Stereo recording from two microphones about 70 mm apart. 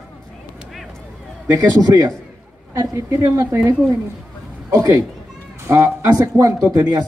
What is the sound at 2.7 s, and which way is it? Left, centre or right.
Speech, right.